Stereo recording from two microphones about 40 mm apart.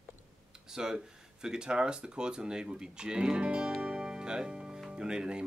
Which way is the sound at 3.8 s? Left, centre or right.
Right.